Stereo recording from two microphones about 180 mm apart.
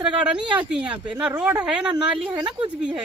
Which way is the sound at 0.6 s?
5° right (ahead or behind).